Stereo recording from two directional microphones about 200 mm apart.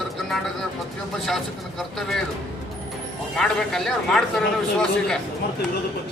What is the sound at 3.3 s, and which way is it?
A man's voice, centre (ahead or behind).